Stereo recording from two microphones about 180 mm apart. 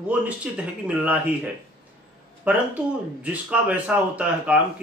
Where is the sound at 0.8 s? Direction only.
10° right (ahead or behind).